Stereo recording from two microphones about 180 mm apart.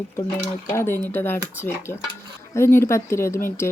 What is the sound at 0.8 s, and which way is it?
Speech, 10° left (ahead or behind).